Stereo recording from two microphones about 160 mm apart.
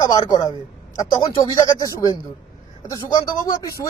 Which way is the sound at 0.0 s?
25° left (ahead or behind).